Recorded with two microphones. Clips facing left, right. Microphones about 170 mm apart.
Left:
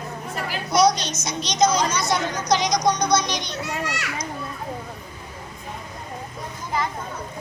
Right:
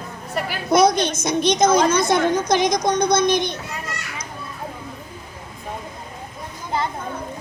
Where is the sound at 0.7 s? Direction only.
55° right (ahead or behind).